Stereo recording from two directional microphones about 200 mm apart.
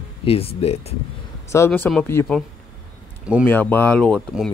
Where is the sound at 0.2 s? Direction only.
30° left (ahead or behind).